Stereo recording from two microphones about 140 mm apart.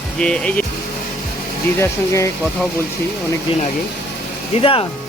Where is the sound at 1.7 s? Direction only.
20° left (ahead or behind).